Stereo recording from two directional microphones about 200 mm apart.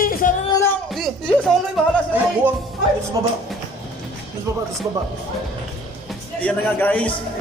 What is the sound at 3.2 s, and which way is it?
Speech, 20° right (ahead or behind).